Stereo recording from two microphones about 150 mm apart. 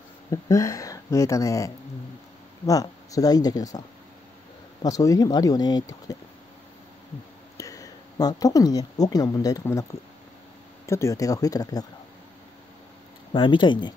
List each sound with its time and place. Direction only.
0.3 s speech: 20° left (ahead or behind)
4.8 s speech: 25° left (ahead or behind)
7.5 s speech: 20° left (ahead or behind)
13.3 s speech: 35° left (ahead or behind)